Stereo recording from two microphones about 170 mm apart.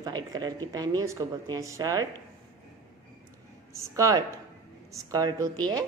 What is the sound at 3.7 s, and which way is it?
A woman's voice, 20° right (ahead or behind).